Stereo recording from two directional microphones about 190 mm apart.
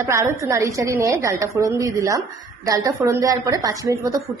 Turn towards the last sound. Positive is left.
turn(degrees=-15)  # may be behind; listen again after turning